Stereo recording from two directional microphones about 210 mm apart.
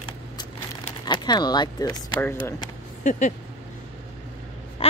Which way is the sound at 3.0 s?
35° left (ahead or behind).